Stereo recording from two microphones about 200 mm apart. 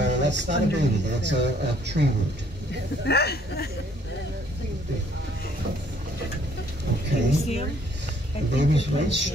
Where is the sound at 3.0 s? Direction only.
55° left (ahead or behind).